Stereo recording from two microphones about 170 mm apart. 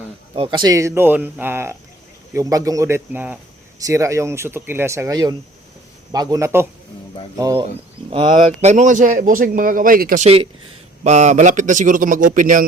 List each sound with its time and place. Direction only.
0.3 s a man's voice: 30° right (ahead or behind)
8.6 s a man's voice: 45° right (ahead or behind)
10.2 s speech: 30° right (ahead or behind)
11.0 s a man's voice: 45° right (ahead or behind)